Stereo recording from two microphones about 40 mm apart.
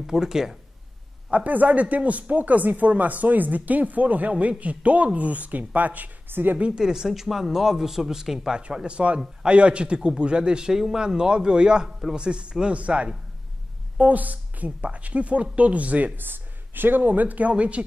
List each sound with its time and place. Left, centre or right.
0.0 s speech: centre
1.3 s speech: right
6.2 s speech: right
6.7 s speech: centre
8.8 s speech: right
16.2 s speech: right